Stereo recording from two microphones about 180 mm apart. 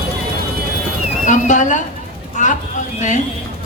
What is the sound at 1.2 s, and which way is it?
Speech, 45° left (ahead or behind).